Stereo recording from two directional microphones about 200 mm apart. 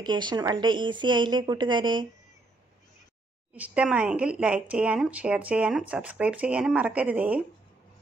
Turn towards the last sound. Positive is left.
turn(degrees=-10)  # may be behind; listen again after turning